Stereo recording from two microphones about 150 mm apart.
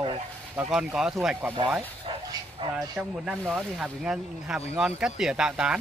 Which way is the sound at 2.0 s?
35° right (ahead or behind).